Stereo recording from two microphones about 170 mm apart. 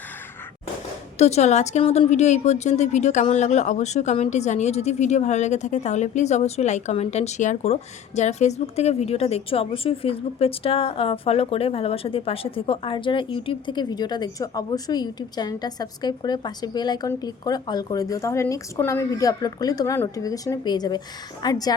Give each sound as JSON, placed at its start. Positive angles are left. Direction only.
{"t": 1.2, "sound": "a woman's voice", "side_deg": 40}